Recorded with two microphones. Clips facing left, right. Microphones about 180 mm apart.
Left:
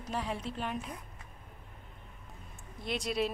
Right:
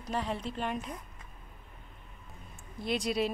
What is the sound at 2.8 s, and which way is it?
Speech, centre (ahead or behind).